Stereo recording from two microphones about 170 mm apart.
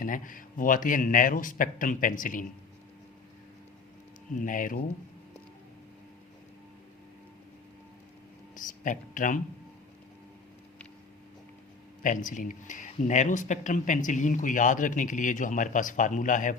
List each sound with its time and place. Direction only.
0.0 s speech: 55° left (ahead or behind)
4.4 s speech: 50° left (ahead or behind)
8.5 s speech: 50° left (ahead or behind)
12.0 s speech: 50° left (ahead or behind)